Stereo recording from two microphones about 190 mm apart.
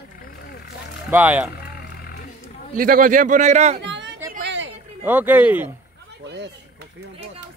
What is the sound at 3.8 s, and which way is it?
Chatter, 70° right (ahead or behind).